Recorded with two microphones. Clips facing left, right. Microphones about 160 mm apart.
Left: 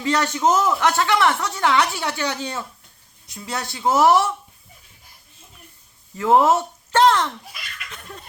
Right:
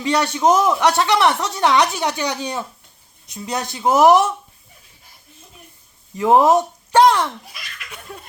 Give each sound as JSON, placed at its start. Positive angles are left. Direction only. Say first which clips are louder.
{"t": 0.0, "sound": "speech", "louder": "right 2 dB", "side_deg": -15}
{"t": 6.1, "sound": "speech", "louder": "right 3 dB", "side_deg": -15}
{"t": 7.9, "sound": "a sound", "louder": "right 5 dB", "side_deg": -10}